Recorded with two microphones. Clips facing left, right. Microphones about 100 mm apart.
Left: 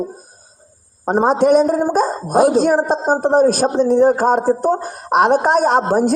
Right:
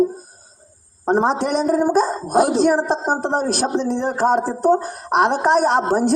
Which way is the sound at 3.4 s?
45° left (ahead or behind).